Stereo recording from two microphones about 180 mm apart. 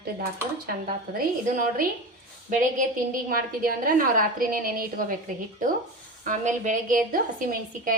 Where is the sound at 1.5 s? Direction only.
50° right (ahead or behind).